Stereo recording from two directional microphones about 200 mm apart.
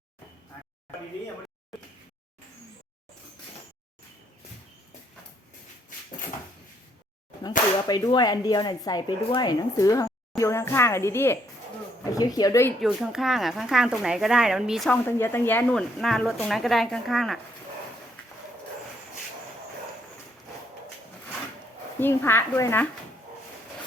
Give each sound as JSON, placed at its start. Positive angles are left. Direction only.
{"t": 7.9, "sound": "speech", "side_deg": 20}
{"t": 12.8, "sound": "speech", "side_deg": 0}
{"t": 15.0, "sound": "speech", "side_deg": 10}
{"t": 22.0, "sound": "speech", "side_deg": 10}